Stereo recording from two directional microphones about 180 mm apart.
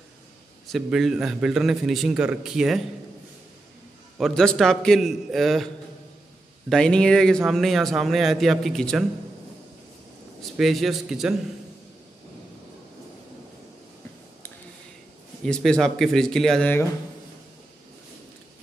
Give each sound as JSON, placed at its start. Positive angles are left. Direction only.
{"t": 0.7, "sound": "speech", "side_deg": 0}
{"t": 4.2, "sound": "speech", "side_deg": 0}
{"t": 6.7, "sound": "speech", "side_deg": 5}
{"t": 10.6, "sound": "speech", "side_deg": 0}
{"t": 15.4, "sound": "speech", "side_deg": 5}